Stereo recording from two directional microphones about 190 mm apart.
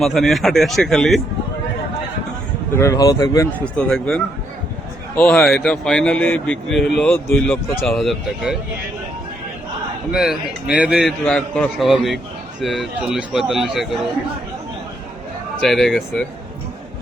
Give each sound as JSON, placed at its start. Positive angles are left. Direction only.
{"t": 0.0, "sound": "a man's voice", "side_deg": 0}
{"t": 2.7, "sound": "speech", "side_deg": 15}
{"t": 3.8, "sound": "a man's voice", "side_deg": 5}
{"t": 10.1, "sound": "a man's voice", "side_deg": -5}
{"t": 15.6, "sound": "a man's voice", "side_deg": 0}